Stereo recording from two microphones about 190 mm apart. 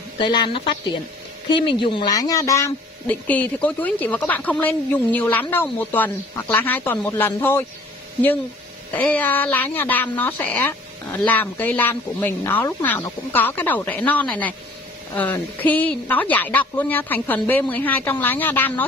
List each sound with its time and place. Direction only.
0.2 s speech: 25° left (ahead or behind)
8.9 s speech: 10° left (ahead or behind)